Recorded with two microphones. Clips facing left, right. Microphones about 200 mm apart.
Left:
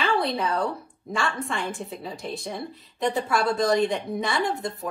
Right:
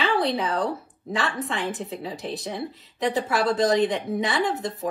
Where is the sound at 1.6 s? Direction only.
20° right (ahead or behind).